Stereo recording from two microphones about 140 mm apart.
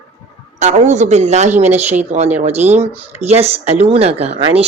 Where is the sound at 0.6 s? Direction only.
55° right (ahead or behind).